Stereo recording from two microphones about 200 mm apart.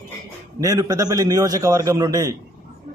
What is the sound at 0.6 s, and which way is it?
A man's voice, 15° right (ahead or behind).